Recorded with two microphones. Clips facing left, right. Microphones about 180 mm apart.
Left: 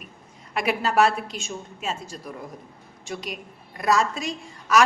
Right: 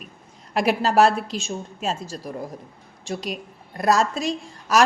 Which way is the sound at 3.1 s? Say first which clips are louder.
Right 4 dB; 35° right (ahead or behind).